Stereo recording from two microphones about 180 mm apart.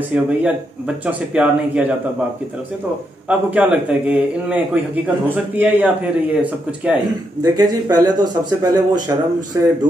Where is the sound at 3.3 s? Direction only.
10° right (ahead or behind).